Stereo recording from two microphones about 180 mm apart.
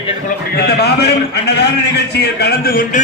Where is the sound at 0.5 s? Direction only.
60° left (ahead or behind).